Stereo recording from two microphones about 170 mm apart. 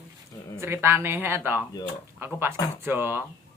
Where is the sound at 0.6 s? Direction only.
15° right (ahead or behind).